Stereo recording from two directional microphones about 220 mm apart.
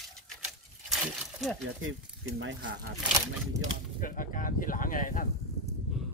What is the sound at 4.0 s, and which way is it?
Speech, 35° left (ahead or behind).